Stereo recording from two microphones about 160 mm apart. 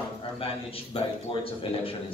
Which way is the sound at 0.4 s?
35° left (ahead or behind).